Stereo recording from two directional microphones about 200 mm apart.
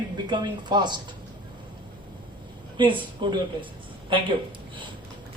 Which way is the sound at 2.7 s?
25° right (ahead or behind).